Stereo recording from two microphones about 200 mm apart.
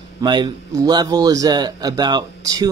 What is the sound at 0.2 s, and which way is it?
A man's voice, 20° right (ahead or behind).